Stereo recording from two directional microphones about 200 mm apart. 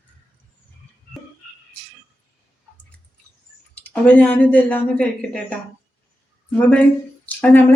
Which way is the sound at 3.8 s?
5° left (ahead or behind).